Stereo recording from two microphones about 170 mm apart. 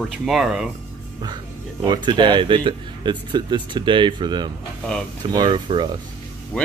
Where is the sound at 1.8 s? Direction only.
25° right (ahead or behind).